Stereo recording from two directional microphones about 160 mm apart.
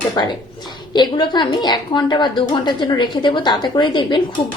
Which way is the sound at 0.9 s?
25° left (ahead or behind).